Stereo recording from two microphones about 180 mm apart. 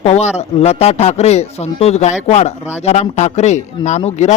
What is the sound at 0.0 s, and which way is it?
Speech, 40° left (ahead or behind).